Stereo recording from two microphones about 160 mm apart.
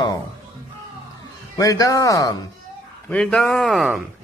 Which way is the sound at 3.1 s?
5° left (ahead or behind).